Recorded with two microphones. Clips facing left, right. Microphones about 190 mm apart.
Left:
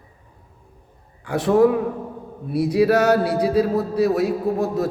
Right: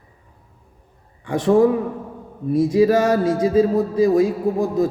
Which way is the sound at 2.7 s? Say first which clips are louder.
Left 1 dB; 75° left (ahead or behind).